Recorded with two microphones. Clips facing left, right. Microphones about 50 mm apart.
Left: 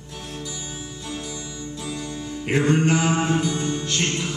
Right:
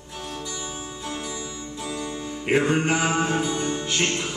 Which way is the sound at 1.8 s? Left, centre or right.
Centre.